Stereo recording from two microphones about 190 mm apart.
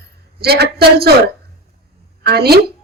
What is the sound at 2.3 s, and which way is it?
Speech, 55° right (ahead or behind).